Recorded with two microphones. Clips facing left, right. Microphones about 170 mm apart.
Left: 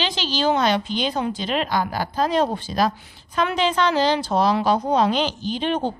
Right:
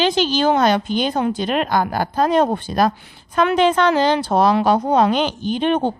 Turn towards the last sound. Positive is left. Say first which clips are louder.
# right 5 dB
turn(degrees=-55)  # may be behind; listen again after turning